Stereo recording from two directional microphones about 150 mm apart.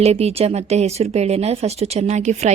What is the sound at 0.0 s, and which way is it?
Speech, 45° right (ahead or behind).